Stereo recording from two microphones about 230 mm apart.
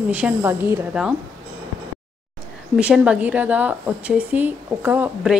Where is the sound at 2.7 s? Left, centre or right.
Centre.